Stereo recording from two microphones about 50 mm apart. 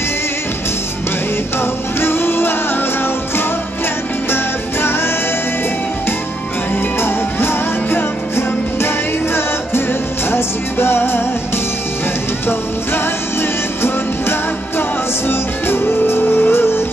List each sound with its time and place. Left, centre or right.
1.6 s music: left
7.0 s music: left
12.4 s music: left